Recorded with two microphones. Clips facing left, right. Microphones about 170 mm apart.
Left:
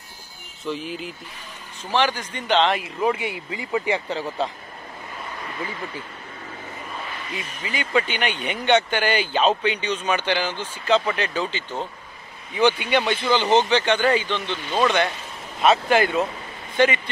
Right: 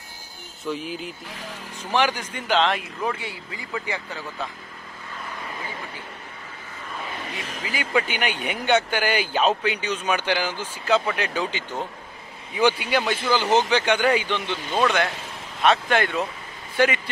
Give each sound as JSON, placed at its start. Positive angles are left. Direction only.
{"t": 0.7, "sound": "speech", "side_deg": 0}
{"t": 1.9, "sound": "speech", "side_deg": -10}
{"t": 3.0, "sound": "speech", "side_deg": 15}
{"t": 7.6, "sound": "speech", "side_deg": -5}
{"t": 15.6, "sound": "speech", "side_deg": 5}
{"t": 16.7, "sound": "speech", "side_deg": -10}